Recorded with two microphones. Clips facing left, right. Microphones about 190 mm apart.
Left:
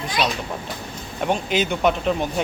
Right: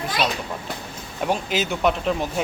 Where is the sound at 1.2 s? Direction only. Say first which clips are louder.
Left 2 dB; centre (ahead or behind).